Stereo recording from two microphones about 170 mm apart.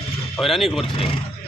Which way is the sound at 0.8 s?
30° left (ahead or behind).